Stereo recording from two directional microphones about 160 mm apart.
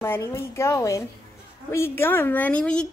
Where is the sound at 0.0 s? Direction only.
15° left (ahead or behind).